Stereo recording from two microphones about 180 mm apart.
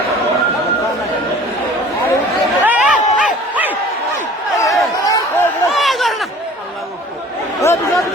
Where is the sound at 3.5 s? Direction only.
10° right (ahead or behind).